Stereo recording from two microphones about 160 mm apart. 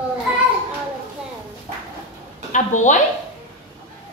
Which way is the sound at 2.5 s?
50° left (ahead or behind).